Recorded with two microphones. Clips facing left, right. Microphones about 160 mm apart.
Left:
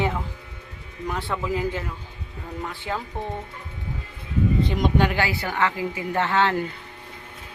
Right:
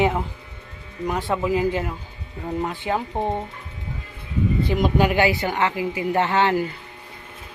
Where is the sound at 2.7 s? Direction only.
20° right (ahead or behind).